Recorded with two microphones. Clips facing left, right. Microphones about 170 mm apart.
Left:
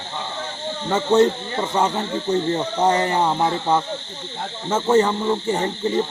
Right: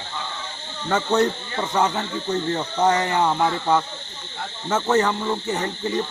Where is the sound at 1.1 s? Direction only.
10° left (ahead or behind).